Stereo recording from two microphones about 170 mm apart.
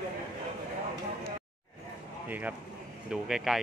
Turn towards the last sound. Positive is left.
turn(degrees=-5)  # may be behind; listen again after turning